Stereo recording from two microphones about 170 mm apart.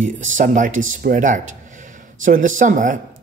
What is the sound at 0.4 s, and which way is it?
Speech, 50° right (ahead or behind).